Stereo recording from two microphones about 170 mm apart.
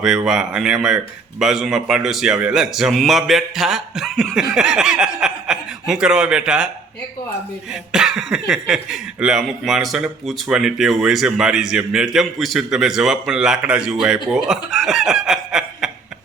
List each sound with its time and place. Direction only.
0.3 s speech: 5° right (ahead or behind)
7.7 s speech: 5° right (ahead or behind)